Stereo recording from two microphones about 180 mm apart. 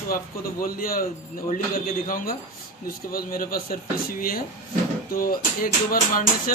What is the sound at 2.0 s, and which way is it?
Speech, 50° left (ahead or behind).